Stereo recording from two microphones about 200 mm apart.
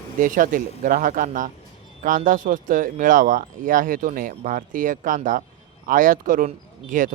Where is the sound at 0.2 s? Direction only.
45° right (ahead or behind).